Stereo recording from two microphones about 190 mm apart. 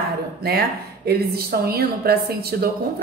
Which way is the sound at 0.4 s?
55° right (ahead or behind).